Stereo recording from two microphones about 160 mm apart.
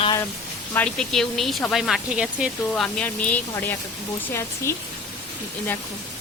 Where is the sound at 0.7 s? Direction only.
10° left (ahead or behind).